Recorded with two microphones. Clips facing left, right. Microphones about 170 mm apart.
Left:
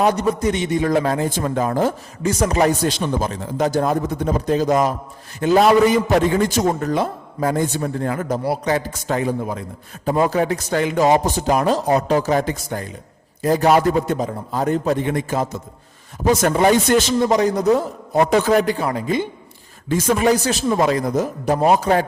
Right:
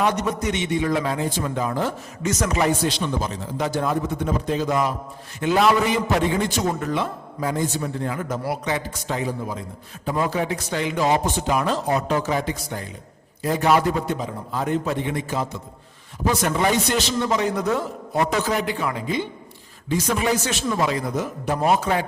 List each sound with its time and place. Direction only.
0.0 s a man's voice: 35° left (ahead or behind)
8.3 s a man's voice: 40° left (ahead or behind); by 9.6 s 55° left (ahead or behind)
10.1 s a man's voice: 45° left (ahead or behind)
18.3 s a man's voice: 50° left (ahead or behind)